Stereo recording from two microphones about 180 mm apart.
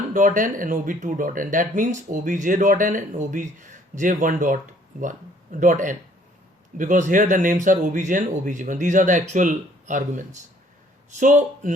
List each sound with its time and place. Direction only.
0.1 s speech: 45° right (ahead or behind)